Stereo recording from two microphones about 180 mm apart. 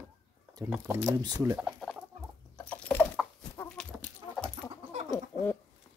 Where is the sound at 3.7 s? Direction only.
5° left (ahead or behind).